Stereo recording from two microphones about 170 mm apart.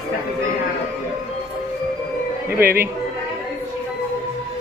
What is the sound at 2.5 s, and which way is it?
Speech, 15° right (ahead or behind).